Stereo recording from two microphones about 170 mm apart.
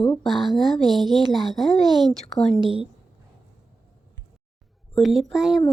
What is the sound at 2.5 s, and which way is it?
Speech, 30° right (ahead or behind).